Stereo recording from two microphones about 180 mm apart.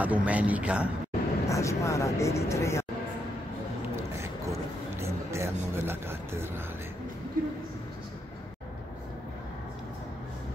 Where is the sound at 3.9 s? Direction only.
15° right (ahead or behind).